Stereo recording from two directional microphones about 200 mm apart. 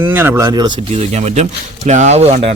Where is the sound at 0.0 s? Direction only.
10° right (ahead or behind).